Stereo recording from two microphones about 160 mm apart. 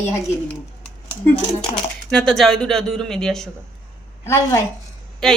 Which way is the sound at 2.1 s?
5° left (ahead or behind).